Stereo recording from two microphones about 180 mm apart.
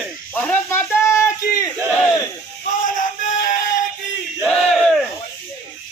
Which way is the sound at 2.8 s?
45° left (ahead or behind).